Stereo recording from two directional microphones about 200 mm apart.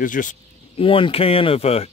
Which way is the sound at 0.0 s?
40° left (ahead or behind).